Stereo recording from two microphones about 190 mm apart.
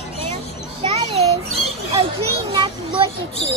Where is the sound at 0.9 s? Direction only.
35° right (ahead or behind).